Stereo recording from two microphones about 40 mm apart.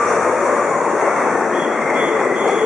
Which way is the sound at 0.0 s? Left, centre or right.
Centre.